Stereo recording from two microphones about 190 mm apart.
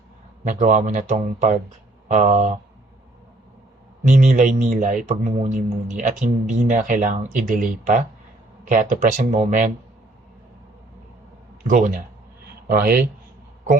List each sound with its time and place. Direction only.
0.4 s speech: 40° right (ahead or behind)
4.0 s speech: 40° right (ahead or behind)
11.7 s speech: 45° right (ahead or behind)